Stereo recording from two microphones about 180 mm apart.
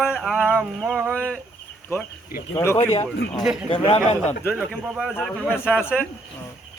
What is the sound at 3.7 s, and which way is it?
Speech, 30° left (ahead or behind).